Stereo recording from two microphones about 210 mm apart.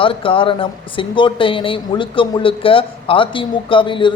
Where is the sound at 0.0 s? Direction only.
25° left (ahead or behind).